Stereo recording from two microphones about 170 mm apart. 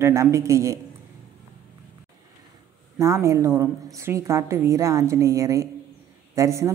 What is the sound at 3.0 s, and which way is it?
A woman's voice, 15° right (ahead or behind).